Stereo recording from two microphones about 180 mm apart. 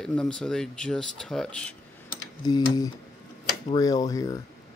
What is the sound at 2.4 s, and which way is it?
Speech, 20° left (ahead or behind).